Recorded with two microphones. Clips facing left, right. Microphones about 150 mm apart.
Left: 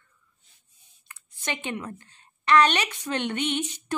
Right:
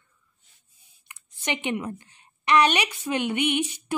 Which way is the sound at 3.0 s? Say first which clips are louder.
Right 3 dB; 10° right (ahead or behind).